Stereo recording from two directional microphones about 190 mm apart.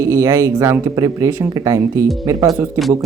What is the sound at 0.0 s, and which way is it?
Speech, 15° right (ahead or behind).